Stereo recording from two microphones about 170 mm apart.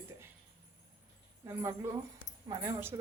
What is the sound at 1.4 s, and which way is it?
Speech, 15° right (ahead or behind).